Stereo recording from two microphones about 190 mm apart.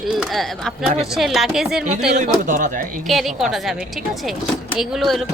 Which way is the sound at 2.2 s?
40° right (ahead or behind).